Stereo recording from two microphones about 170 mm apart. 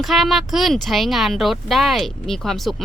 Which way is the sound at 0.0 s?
Centre (ahead or behind).